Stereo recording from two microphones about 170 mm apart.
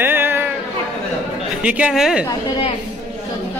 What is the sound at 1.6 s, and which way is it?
Speech, 5° right (ahead or behind).